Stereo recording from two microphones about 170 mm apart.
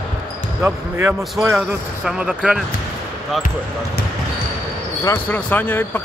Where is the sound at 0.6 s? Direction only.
15° right (ahead or behind).